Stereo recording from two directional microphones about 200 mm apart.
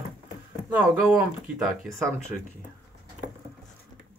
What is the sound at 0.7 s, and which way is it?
Speech, 5° right (ahead or behind).